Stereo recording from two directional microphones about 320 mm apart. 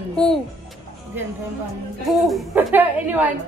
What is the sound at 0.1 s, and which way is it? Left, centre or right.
Speech, centre.